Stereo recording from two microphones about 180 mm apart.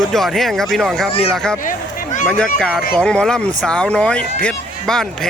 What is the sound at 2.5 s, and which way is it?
Speech, 5° left (ahead or behind).